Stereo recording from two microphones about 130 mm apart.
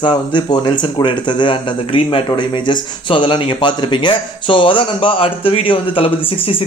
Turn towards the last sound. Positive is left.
turn(degrees=45)  # may be behind; listen again after turning